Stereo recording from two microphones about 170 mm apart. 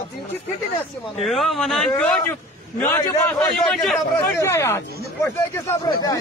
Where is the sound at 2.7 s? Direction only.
15° left (ahead or behind).